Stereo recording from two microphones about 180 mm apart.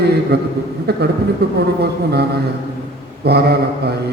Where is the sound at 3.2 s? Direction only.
65° right (ahead or behind).